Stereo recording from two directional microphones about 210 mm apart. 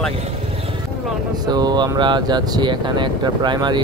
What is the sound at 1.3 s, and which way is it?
Speech, 20° right (ahead or behind).